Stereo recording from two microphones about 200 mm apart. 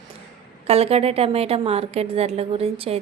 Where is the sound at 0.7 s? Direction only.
30° right (ahead or behind).